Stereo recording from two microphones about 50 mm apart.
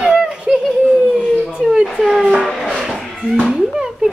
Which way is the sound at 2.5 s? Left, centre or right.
Centre.